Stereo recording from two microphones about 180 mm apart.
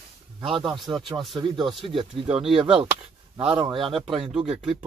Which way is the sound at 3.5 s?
30° right (ahead or behind).